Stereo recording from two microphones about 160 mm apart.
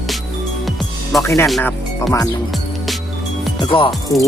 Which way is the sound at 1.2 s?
15° left (ahead or behind).